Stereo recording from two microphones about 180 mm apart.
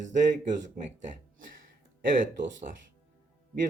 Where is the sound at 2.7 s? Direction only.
45° right (ahead or behind).